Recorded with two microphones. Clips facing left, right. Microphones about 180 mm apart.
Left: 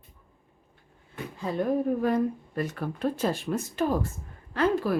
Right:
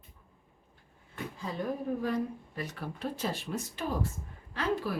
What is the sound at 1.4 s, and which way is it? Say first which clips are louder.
Speech: left 9 dB; 60° left (ahead or behind).